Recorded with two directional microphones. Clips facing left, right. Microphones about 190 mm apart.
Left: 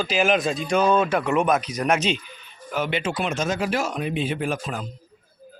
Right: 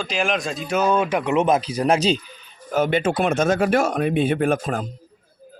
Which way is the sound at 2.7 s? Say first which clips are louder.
Right 6 dB; 45° right (ahead or behind).